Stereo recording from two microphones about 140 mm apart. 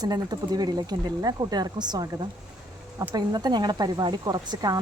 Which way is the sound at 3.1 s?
30° right (ahead or behind).